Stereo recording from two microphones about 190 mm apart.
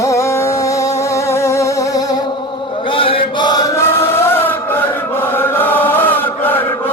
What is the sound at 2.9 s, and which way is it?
Chant, 30° left (ahead or behind).